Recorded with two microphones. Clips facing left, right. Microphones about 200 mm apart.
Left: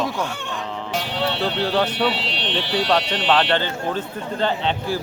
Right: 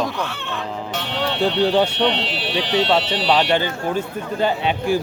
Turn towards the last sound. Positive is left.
turn(degrees=-10)  # may be behind; listen again after turning